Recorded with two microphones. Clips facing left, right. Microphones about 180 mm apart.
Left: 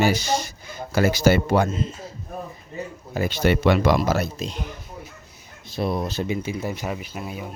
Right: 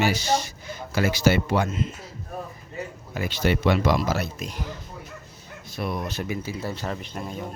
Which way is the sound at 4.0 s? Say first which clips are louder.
Left 4 dB; 45° left (ahead or behind).